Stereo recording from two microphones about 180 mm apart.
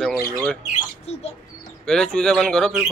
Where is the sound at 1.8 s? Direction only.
5° left (ahead or behind).